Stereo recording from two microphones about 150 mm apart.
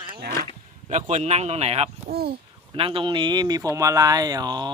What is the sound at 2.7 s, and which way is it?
Speech, 35° right (ahead or behind).